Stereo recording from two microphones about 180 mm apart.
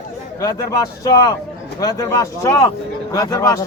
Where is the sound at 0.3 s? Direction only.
20° left (ahead or behind).